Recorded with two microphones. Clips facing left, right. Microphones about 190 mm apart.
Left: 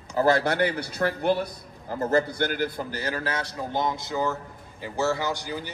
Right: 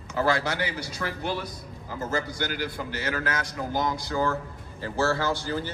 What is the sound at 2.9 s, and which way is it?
A man's voice, 35° left (ahead or behind).